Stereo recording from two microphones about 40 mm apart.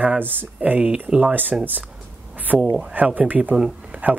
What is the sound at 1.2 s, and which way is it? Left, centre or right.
Speech, right.